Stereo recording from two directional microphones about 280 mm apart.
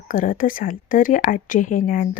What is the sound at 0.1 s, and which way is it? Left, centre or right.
Speech, left.